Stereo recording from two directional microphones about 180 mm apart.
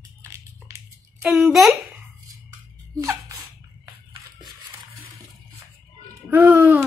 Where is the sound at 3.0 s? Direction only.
20° right (ahead or behind).